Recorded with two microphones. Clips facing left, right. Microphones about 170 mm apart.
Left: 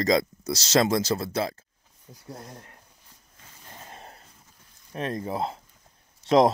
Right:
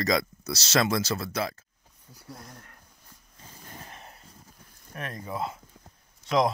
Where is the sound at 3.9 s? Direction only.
35° left (ahead or behind).